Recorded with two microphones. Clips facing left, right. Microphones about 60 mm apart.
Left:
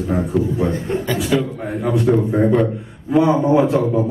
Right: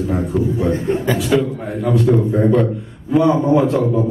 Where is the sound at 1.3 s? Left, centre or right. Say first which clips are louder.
Right 2 dB; centre.